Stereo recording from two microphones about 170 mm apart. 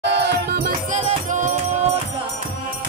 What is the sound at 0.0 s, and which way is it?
Music, 80° right.